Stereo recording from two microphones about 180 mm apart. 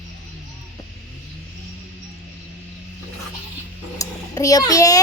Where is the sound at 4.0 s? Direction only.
20° left (ahead or behind).